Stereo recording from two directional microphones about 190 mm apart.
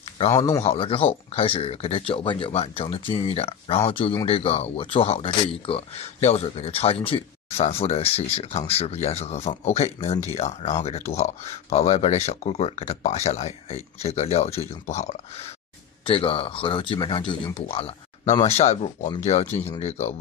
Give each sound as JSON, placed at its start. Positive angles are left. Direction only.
{"t": 0.6, "sound": "speech", "side_deg": 30}